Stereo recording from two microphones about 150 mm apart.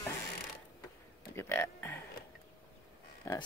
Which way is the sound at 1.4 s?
15° left (ahead or behind).